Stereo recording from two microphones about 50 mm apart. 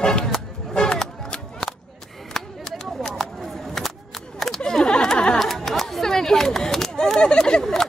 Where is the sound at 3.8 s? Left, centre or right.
Centre.